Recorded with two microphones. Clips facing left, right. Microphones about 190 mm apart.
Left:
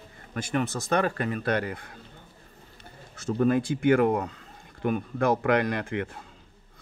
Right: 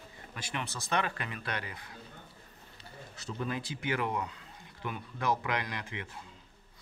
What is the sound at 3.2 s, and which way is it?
Speech, 50° left (ahead or behind).